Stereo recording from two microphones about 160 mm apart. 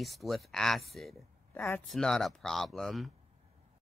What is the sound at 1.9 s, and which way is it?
Speech, 5° left (ahead or behind).